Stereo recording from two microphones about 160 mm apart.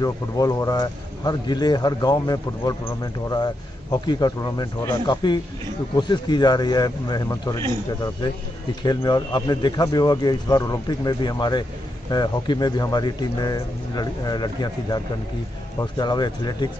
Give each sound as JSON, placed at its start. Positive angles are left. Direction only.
{"t": 0.0, "sound": "speech", "side_deg": 20}
{"t": 8.8, "sound": "speech", "side_deg": 25}